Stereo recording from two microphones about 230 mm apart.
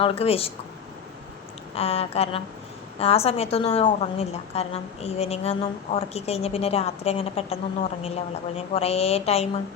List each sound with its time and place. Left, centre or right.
0.0 s a woman's voice: left
1.7 s a woman's voice: left